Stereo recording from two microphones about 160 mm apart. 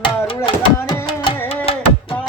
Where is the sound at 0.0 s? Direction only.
30° left (ahead or behind).